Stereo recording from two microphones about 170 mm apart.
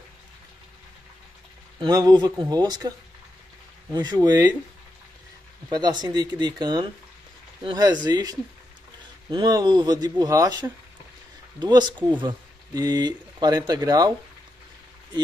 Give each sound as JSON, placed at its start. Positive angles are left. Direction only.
{"t": 1.8, "sound": "speech", "side_deg": -20}
{"t": 3.9, "sound": "speech", "side_deg": -25}
{"t": 5.7, "sound": "speech", "side_deg": -25}